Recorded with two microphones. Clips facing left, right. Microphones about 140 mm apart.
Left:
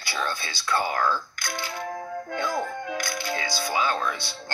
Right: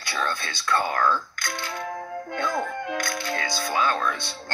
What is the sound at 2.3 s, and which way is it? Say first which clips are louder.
Speech: right 1 dB; 50° right (ahead or behind).